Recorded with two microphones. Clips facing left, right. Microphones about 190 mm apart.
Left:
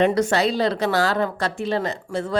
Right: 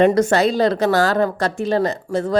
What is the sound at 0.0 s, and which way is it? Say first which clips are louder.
A woman's voice: right 4 dB; 45° right (ahead or behind).